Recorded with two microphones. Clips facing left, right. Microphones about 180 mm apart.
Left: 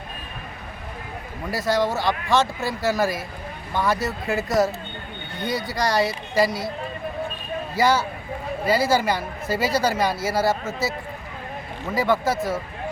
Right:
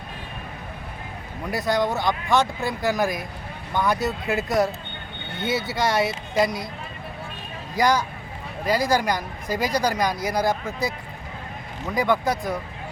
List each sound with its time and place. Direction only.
1.5 s speech: centre (ahead or behind)
2.0 s speech: 20° right (ahead or behind)
2.6 s speech: centre (ahead or behind)
7.8 s a woman's voice: 5° left (ahead or behind)
11.9 s speech: 5° left (ahead or behind)